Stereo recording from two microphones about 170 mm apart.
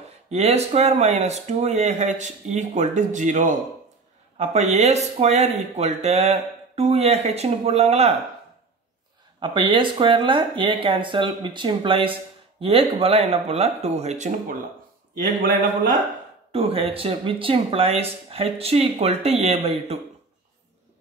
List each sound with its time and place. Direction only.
0.3 s speech: 40° right (ahead or behind)
9.4 s speech: 30° right (ahead or behind)
16.5 s speech: 35° right (ahead or behind)